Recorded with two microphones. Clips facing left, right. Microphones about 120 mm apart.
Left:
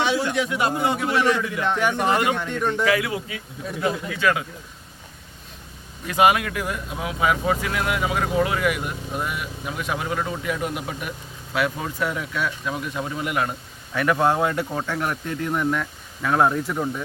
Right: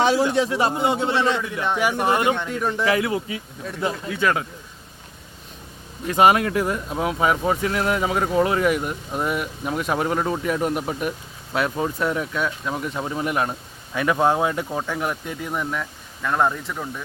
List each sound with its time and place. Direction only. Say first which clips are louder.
0.0 s a sound: right 4 dB; 40° right (ahead or behind)
0.3 s speech: right 2 dB; 30° right (ahead or behind)
1.6 s a man's voice: right 1 dB; 5° right (ahead or behind)
2.8 s speech: right 1 dB; 30° right (ahead or behind)
6.1 s speech: right 2 dB; 35° right (ahead or behind)
11.5 s speech: right 2 dB; 30° right (ahead or behind); by 16.9 s 10° left (ahead or behind)